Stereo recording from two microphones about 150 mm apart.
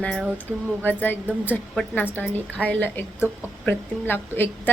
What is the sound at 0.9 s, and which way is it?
A woman's voice, 10° left (ahead or behind).